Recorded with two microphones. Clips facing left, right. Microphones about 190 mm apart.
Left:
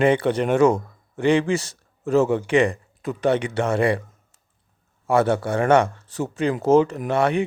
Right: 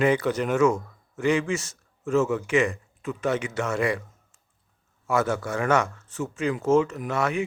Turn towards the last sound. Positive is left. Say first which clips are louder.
# left 6 dB
turn(degrees=30)  # may be behind; listen again after turning